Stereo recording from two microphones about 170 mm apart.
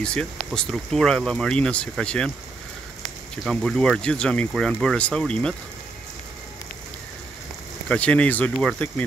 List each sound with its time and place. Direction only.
0.0 s speech: 5° left (ahead or behind)
3.4 s speech: 5° left (ahead or behind)
7.9 s speech: 10° left (ahead or behind)